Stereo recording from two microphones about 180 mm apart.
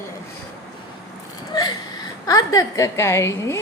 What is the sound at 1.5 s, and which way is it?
Whimper, 25° left (ahead or behind).